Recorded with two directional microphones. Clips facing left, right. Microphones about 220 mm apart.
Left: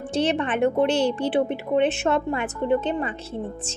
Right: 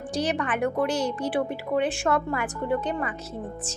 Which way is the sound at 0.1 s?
25° left (ahead or behind).